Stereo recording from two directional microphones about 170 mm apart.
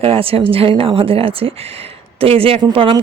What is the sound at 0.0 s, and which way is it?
A woman's voice, 35° right (ahead or behind).